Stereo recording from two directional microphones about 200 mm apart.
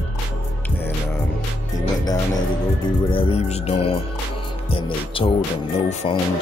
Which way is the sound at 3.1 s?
30° left (ahead or behind).